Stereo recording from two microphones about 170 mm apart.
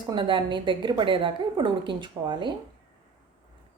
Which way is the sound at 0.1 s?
30° right (ahead or behind).